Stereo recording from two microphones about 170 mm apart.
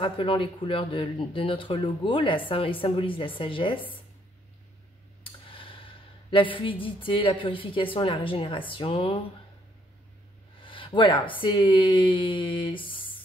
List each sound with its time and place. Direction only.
0.0 s speech: 30° left (ahead or behind)
5.5 s a sound: 30° left (ahead or behind)
6.3 s speech: 30° left (ahead or behind)
10.6 s speech: 30° left (ahead or behind)